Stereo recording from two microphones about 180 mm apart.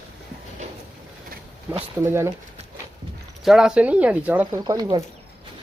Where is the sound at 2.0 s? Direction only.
15° right (ahead or behind).